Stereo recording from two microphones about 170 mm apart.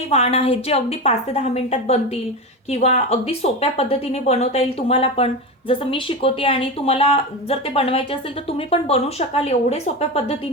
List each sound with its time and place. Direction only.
0.1 s a woman's voice: 40° left (ahead or behind)